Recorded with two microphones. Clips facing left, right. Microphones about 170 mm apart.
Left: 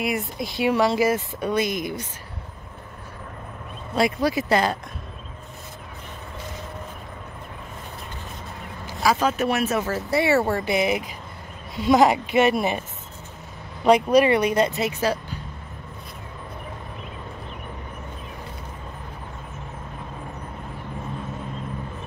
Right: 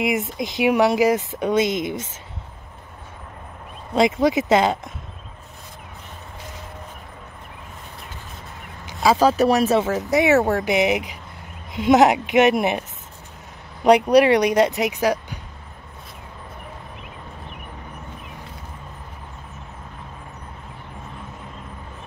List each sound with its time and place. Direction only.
0.2 s speech: 20° right (ahead or behind)
3.9 s speech: 20° right (ahead or behind)
9.0 s speech: 30° right (ahead or behind)
10.1 s speech: 15° right (ahead or behind)
14.1 s speech: 75° right (ahead or behind)
14.7 s speech: 15° right (ahead or behind)